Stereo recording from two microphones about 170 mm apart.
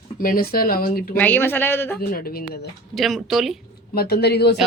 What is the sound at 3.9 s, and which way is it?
Speech, 65° left (ahead or behind).